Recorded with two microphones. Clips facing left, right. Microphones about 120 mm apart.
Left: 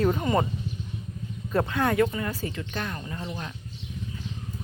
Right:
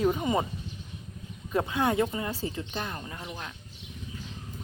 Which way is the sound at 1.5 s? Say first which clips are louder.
Left 2 dB; 15° right (ahead or behind).